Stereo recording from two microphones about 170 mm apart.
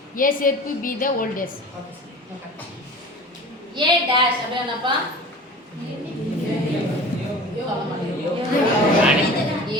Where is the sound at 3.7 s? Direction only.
25° right (ahead or behind).